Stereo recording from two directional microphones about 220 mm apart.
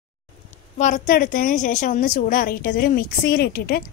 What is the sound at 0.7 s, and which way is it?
A woman's voice, 35° left (ahead or behind).